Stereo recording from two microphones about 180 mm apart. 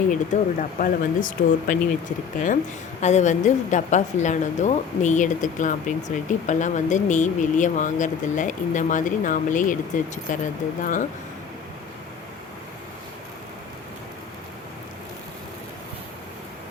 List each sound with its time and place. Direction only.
0.1 s a woman's voice: 45° left (ahead or behind)